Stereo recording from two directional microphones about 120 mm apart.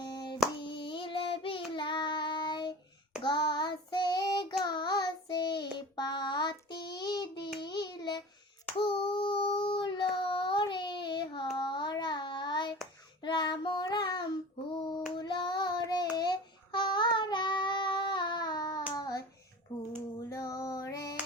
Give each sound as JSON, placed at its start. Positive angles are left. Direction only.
{"t": 0.6, "sound": "child singing", "side_deg": 45}
{"t": 14.7, "sound": "hands", "side_deg": 40}
{"t": 15.1, "sound": "child singing", "side_deg": 40}
{"t": 20.3, "sound": "female singing", "side_deg": 25}